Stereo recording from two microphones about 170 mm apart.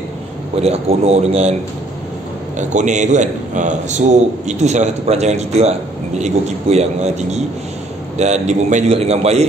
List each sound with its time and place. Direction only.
0.6 s a man's voice: 40° right (ahead or behind)
2.7 s a man's voice: 45° right (ahead or behind)